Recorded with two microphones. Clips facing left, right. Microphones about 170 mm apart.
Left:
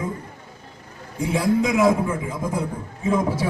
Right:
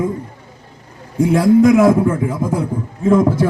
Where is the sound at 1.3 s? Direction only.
55° right (ahead or behind).